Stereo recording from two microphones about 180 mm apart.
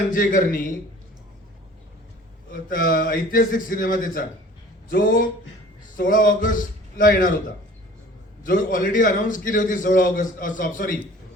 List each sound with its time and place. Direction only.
0.1 s a man's voice: 50° left (ahead or behind)
2.6 s a man's voice: 50° left (ahead or behind)
8.4 s a man's voice: 50° left (ahead or behind)